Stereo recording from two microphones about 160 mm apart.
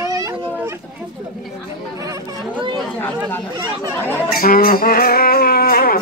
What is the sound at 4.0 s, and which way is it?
Speech, 10° left (ahead or behind).